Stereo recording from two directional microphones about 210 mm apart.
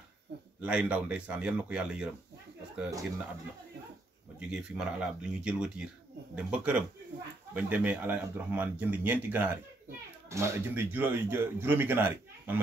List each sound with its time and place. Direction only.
0.6 s speech: 5° right (ahead or behind)
2.8 s speech: 15° right (ahead or behind)
4.4 s speech: 5° right (ahead or behind)